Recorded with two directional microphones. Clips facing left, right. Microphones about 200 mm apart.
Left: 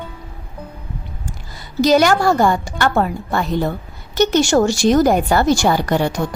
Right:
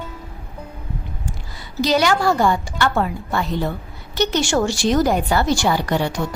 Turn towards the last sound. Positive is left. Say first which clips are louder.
# left 3 dB
turn(degrees=45)  # may be behind; listen again after turning